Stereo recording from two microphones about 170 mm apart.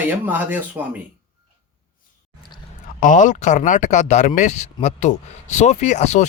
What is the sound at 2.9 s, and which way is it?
Speech, 50° left (ahead or behind).